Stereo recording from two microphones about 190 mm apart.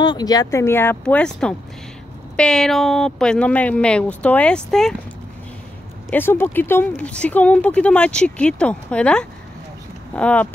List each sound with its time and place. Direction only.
0.0 s speech: 20° left (ahead or behind); by 4.9 s 5° left (ahead or behind)
6.0 s speech: 10° left (ahead or behind)